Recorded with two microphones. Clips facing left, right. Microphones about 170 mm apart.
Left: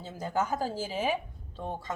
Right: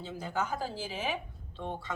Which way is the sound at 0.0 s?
45° left (ahead or behind).